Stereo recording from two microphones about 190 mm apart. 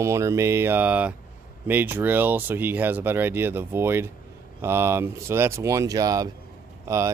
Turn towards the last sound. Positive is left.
turn(degrees=-15)  # may be behind; listen again after turning